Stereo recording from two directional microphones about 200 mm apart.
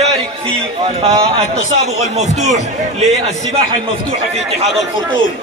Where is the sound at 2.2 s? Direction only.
35° right (ahead or behind).